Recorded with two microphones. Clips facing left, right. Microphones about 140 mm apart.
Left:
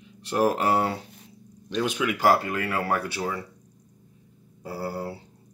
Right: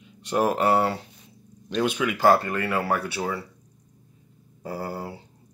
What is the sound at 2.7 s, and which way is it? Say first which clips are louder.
Speech: right 1 dB; 20° right (ahead or behind).